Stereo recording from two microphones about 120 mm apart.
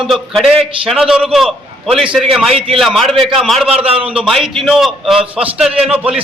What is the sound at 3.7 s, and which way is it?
Speech, 55° right (ahead or behind).